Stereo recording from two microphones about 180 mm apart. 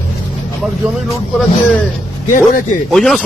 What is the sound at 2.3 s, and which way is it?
Speech, 45° left (ahead or behind).